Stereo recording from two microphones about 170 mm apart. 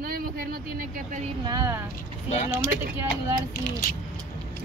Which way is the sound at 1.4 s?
20° right (ahead or behind).